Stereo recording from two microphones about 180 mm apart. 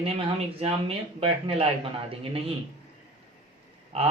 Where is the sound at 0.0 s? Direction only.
35° right (ahead or behind).